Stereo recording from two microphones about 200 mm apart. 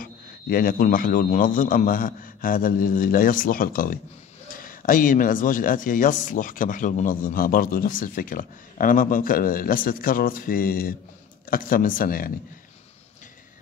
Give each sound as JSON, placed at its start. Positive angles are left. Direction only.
{"t": 0.0, "sound": "speech", "side_deg": 45}